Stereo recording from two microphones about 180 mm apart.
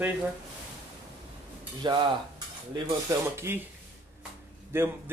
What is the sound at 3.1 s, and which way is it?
Speech, 15° right (ahead or behind).